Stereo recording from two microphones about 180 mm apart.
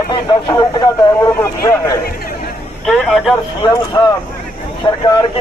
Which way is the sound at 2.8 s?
Centre (ahead or behind).